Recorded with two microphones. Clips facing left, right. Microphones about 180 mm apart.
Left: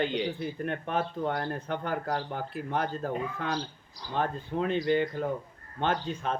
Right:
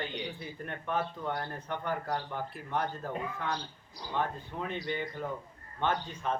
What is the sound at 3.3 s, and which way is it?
Speech, 90° left.